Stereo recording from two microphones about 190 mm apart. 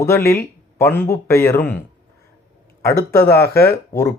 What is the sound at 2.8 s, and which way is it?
Speech, 15° left (ahead or behind).